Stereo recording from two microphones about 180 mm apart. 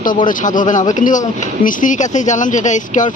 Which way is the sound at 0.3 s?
45° left (ahead or behind).